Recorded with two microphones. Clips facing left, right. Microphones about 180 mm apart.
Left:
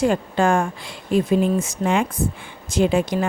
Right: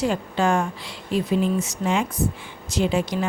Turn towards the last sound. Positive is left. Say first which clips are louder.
# left 4 dB
turn(degrees=50)  # may be behind; listen again after turning